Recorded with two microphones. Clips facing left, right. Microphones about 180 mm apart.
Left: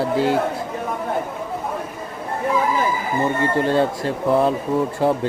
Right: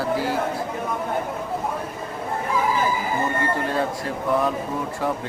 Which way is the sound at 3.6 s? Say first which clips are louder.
Left 6 dB; 25° left (ahead or behind).